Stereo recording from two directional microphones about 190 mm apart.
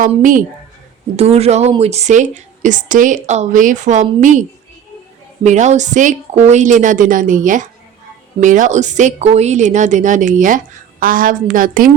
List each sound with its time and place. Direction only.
0.0 s a woman's voice: 45° right (ahead or behind)
1.1 s a woman's voice: 35° right (ahead or behind)